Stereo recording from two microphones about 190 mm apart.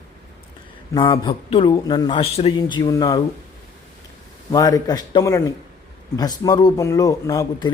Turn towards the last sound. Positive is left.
turn(degrees=15)  # may be behind; listen again after turning